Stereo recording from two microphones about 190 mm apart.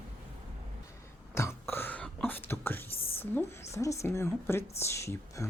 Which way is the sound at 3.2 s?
15° left (ahead or behind).